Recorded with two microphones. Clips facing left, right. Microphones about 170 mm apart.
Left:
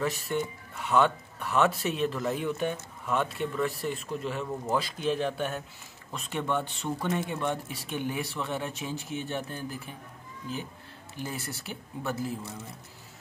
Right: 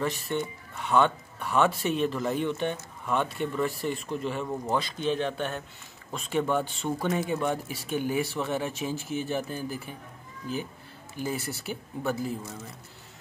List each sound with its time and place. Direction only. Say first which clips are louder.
0.0 s speech: even; 5° left (ahead or behind)
11.1 s speech: right 5 dB; centre (ahead or behind)